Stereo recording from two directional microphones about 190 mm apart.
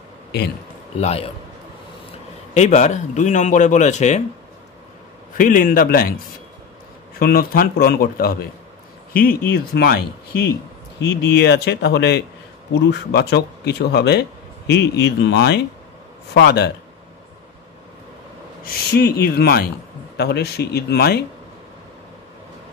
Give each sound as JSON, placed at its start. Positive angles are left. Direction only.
{"t": 1.0, "sound": "speech", "side_deg": 30}
{"t": 2.5, "sound": "speech", "side_deg": 40}
{"t": 5.4, "sound": "speech", "side_deg": 45}
{"t": 11.0, "sound": "speech", "side_deg": 65}
{"t": 18.6, "sound": "speech", "side_deg": 50}